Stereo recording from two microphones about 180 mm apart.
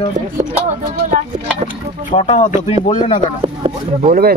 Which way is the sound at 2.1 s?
40° left (ahead or behind).